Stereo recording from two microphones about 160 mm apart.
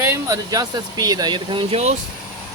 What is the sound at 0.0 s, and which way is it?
Speech, 15° right (ahead or behind).